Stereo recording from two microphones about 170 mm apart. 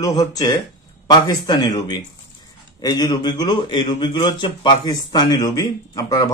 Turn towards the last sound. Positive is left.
turn(degrees=20)  # may be behind; listen again after turning